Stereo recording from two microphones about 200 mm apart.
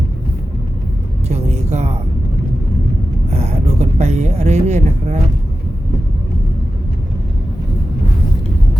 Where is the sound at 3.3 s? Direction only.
35° right (ahead or behind).